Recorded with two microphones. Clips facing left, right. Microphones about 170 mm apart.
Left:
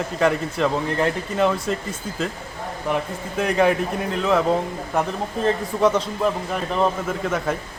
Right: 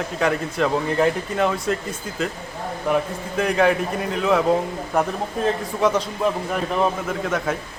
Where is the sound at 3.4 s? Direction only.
Centre (ahead or behind).